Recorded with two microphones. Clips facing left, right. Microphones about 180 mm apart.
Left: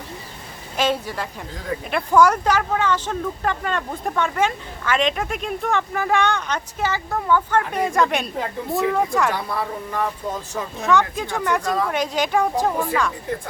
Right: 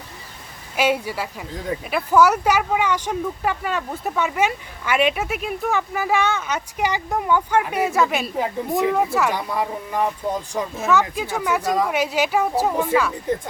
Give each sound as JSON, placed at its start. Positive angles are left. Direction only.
{"t": 0.8, "sound": "speech", "side_deg": -10}
{"t": 6.7, "sound": "speech", "side_deg": -15}
{"t": 8.7, "sound": "speech", "side_deg": -15}
{"t": 9.0, "sound": "speech", "side_deg": -5}
{"t": 10.8, "sound": "speech", "side_deg": 0}